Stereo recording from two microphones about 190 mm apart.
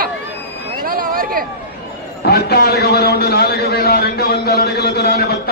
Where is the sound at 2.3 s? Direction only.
55° left (ahead or behind).